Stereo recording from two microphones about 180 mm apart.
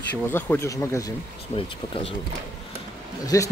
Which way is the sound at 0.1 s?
10° left (ahead or behind).